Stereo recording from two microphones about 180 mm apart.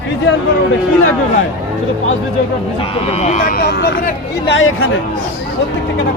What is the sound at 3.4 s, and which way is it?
Speech, 55° left (ahead or behind).